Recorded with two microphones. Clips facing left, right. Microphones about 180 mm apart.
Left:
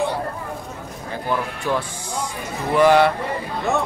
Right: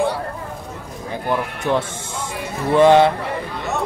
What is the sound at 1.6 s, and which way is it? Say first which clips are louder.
Speech: right 3 dB; 20° right (ahead or behind).